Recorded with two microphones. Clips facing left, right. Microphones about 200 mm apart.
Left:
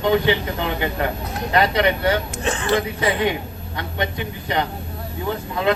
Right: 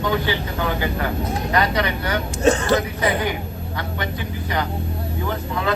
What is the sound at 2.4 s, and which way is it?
Speech, 40° right (ahead or behind).